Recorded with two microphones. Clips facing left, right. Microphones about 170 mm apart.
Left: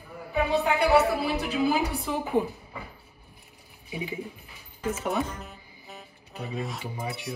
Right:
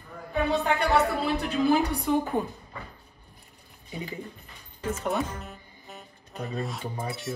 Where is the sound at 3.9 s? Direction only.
15° left (ahead or behind).